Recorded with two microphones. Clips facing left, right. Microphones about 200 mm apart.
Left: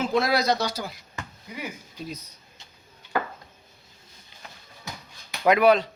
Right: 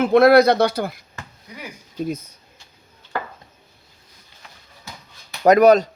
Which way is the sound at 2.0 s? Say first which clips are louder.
Right 10 dB; 50° right (ahead or behind).